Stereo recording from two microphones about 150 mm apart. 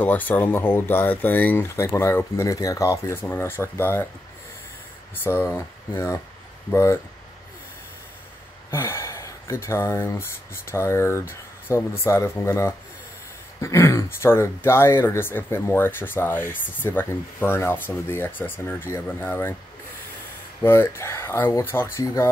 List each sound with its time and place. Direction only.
0.0 s speech: 10° left (ahead or behind)
5.1 s speech: 15° left (ahead or behind)
8.6 s speech: 15° left (ahead or behind)
20.6 s speech: 15° left (ahead or behind)